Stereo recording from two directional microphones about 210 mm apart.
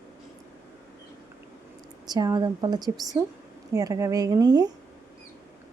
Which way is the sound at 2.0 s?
20° right (ahead or behind).